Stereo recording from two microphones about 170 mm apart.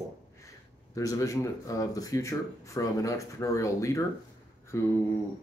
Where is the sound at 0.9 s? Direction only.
20° left (ahead or behind).